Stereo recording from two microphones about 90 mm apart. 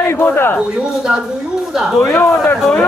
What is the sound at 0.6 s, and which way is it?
Speech, 10° right (ahead or behind).